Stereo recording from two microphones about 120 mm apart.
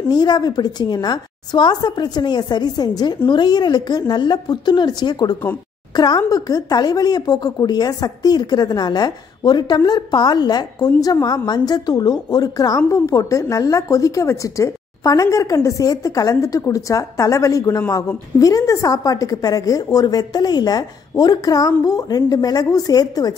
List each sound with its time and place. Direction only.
0.1 s a woman's voice: 35° left (ahead or behind)